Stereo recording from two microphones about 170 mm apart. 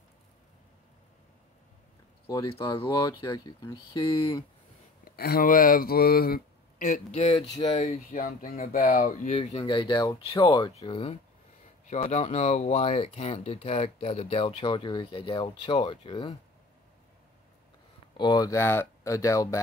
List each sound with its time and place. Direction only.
2.3 s speech: 30° left (ahead or behind)
5.0 s speech: 65° left (ahead or behind); by 7.4 s 35° left (ahead or behind)
7.8 s speech: 50° left (ahead or behind)
9.3 s speech: 30° left (ahead or behind)
18.1 s speech: 25° left (ahead or behind)